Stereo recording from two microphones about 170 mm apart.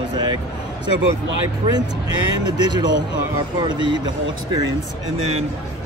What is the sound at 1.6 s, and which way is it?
A man's voice, 30° right (ahead or behind).